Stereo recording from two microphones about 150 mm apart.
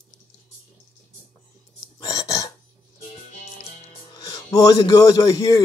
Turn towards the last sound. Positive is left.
turn(degrees=25)  # may be behind; listen again after turning